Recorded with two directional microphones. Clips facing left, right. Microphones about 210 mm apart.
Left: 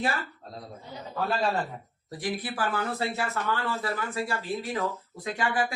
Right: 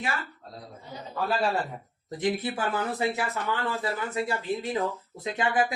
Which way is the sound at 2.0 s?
20° right (ahead or behind).